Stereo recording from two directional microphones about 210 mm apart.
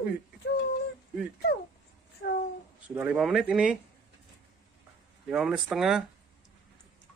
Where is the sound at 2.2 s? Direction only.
55° left (ahead or behind).